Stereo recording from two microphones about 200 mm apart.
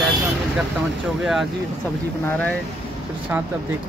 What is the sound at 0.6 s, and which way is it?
Speech, centre (ahead or behind).